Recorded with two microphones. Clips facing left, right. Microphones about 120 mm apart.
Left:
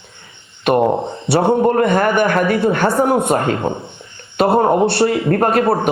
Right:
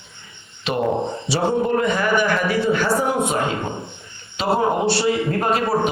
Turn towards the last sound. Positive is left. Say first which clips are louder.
# left 6 dB
turn(degrees=55)  # may be behind; listen again after turning